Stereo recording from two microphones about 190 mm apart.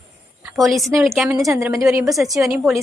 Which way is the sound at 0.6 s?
Centre (ahead or behind).